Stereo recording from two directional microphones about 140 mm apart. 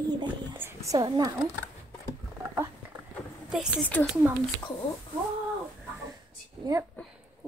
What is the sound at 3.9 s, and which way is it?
Speech, 15° left (ahead or behind).